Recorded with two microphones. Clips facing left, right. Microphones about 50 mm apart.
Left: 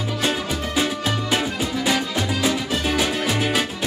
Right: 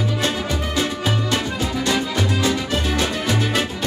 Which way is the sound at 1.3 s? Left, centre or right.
Centre.